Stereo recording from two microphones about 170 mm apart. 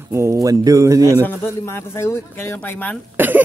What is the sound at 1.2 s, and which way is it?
A man's voice, 10° left (ahead or behind).